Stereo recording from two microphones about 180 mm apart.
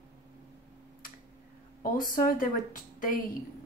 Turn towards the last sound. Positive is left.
turn(degrees=50)  # may be behind; listen again after turning